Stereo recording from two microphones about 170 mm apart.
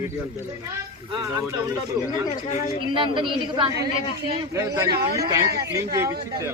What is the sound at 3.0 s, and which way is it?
A woman's voice, 30° right (ahead or behind).